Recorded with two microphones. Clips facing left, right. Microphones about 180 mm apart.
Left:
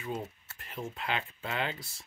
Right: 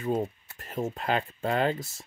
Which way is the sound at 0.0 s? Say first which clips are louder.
Right 9 dB; 40° right (ahead or behind).